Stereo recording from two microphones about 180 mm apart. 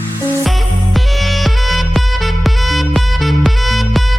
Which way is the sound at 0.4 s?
Centre (ahead or behind).